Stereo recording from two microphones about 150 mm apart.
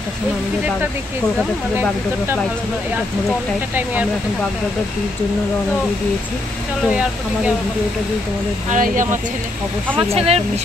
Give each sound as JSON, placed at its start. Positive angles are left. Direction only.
{"t": 3.7, "sound": "speech", "side_deg": -10}
{"t": 6.9, "sound": "speech", "side_deg": -5}
{"t": 8.6, "sound": "speech", "side_deg": -60}
{"t": 9.9, "sound": "speech", "side_deg": -40}